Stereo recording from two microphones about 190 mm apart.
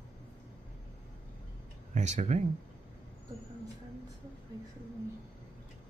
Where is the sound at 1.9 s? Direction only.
40° right (ahead or behind).